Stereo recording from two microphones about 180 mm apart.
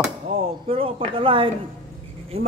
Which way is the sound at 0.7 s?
30° right (ahead or behind).